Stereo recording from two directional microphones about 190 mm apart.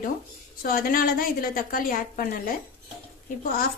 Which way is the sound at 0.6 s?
50° left (ahead or behind).